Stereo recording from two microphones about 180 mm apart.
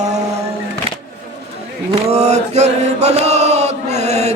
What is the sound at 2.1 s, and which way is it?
Chant, 40° right (ahead or behind).